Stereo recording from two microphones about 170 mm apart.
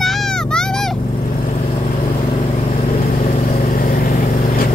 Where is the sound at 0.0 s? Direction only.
5° left (ahead or behind).